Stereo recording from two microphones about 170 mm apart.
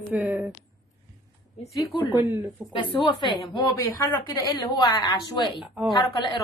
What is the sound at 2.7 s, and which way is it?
A woman's voice, 30° left (ahead or behind).